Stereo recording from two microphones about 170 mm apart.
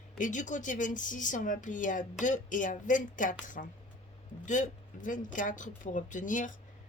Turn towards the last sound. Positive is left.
turn(degrees=50)  # may be behind; listen again after turning